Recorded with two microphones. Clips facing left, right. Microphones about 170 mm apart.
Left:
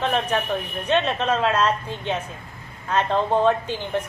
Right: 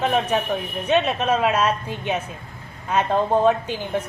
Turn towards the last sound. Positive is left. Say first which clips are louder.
# right 1 dB
turn(degrees=-10)  # may be behind; listen again after turning